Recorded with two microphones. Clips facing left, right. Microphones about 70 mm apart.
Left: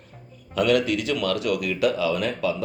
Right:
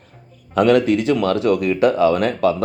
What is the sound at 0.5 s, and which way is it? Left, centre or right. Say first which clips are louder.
Speech: right 7 dB; right.